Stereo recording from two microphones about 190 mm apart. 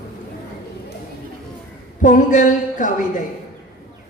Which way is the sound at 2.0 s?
40° left (ahead or behind).